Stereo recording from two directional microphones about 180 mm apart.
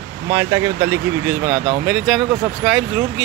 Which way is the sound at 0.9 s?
10° right (ahead or behind).